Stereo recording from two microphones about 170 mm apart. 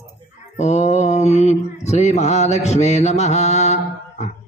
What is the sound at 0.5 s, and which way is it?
Mantra, 45° left (ahead or behind).